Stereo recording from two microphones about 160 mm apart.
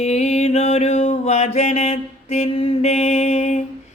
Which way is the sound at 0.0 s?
45° left (ahead or behind).